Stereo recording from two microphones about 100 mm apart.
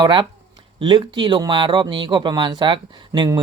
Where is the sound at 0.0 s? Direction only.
55° right (ahead or behind).